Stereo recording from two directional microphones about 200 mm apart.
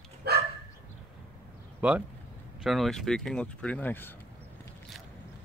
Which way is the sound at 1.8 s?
5° right (ahead or behind).